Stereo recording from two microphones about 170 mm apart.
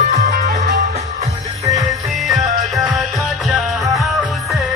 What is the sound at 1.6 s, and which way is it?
Music, 20° right (ahead or behind).